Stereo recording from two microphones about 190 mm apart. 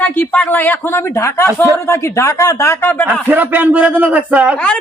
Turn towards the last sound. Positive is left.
turn(degrees=5)  # may be behind; listen again after turning